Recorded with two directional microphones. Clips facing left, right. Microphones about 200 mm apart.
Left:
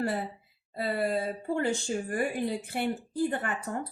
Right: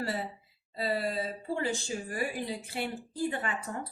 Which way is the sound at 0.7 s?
55° left (ahead or behind).